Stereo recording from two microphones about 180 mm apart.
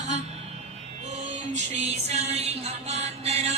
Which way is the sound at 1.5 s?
40° right (ahead or behind).